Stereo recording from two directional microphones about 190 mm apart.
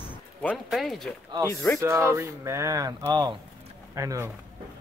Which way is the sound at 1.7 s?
15° right (ahead or behind).